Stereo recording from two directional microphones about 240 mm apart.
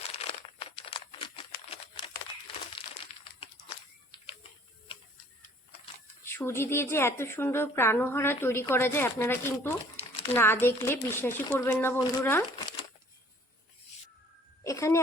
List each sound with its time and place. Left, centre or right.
0.2 s crumpling: left
6.2 s a woman's voice: centre
14.6 s a sound: centre